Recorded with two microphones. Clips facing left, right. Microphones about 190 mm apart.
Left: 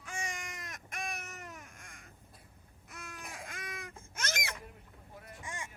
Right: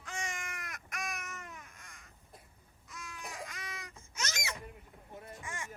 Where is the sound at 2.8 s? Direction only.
55° left (ahead or behind).